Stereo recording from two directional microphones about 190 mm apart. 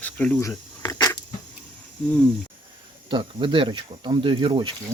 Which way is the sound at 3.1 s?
25° right (ahead or behind).